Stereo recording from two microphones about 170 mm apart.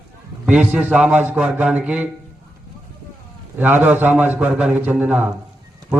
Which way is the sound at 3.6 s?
10° right (ahead or behind).